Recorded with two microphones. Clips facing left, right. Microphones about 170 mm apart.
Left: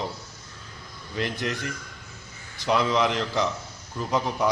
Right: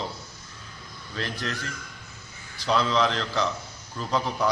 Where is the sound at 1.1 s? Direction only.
15° left (ahead or behind).